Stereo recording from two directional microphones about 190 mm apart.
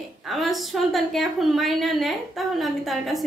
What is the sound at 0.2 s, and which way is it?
A woman's voice, centre (ahead or behind).